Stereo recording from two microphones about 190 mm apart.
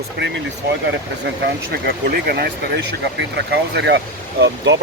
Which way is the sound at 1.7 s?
55° right (ahead or behind).